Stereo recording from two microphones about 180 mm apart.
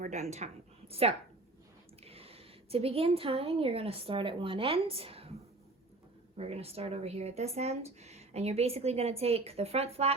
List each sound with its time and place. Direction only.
0.0 s a woman's voice: 40° right (ahead or behind)
6.3 s speech: 35° right (ahead or behind)